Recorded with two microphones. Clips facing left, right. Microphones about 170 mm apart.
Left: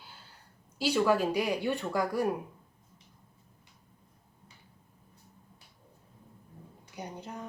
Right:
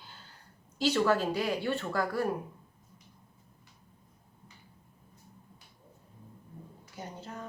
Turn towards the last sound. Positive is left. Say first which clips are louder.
# left 1 dB
turn(degrees=15)  # may be behind; listen again after turning